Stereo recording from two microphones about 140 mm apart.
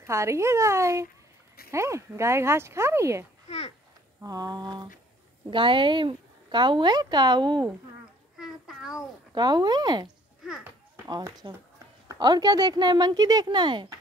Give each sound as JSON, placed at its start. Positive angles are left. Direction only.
{"t": 0.0, "sound": "speech", "side_deg": -20}
{"t": 3.4, "sound": "a child's voice", "side_deg": 45}
{"t": 4.2, "sound": "a woman's voice", "side_deg": -25}
{"t": 8.4, "sound": "child singing", "side_deg": -5}
{"t": 9.3, "sound": "a woman's voice", "side_deg": -30}
{"t": 11.1, "sound": "a woman's voice", "side_deg": -30}